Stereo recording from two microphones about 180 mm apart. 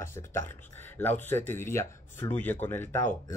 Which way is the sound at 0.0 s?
15° left (ahead or behind).